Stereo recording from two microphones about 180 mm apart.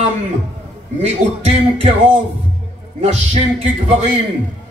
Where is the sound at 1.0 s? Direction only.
35° right (ahead or behind).